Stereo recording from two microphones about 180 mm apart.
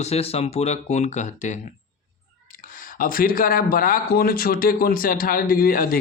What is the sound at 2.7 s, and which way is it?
Speech, 50° left (ahead or behind).